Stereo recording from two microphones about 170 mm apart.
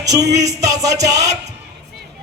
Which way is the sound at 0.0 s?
20° right (ahead or behind).